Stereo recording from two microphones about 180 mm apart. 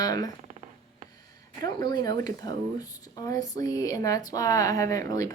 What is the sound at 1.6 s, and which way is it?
Speech, 20° left (ahead or behind).